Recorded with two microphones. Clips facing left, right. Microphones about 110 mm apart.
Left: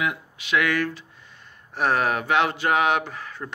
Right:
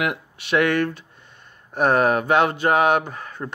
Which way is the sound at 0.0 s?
65° right (ahead or behind).